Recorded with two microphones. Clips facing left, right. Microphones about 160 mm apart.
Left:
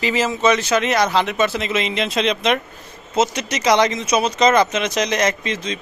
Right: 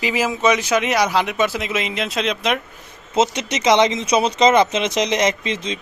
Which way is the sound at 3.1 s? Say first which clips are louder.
Right 1 dB; 25° right (ahead or behind).